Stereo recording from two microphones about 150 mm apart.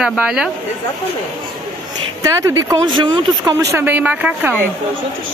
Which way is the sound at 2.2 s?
20° right (ahead or behind).